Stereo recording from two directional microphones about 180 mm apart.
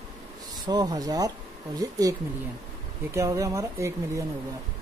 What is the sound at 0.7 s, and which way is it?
Speech, 20° right (ahead or behind).